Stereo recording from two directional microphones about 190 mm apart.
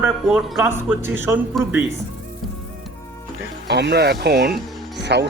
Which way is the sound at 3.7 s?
60° right (ahead or behind).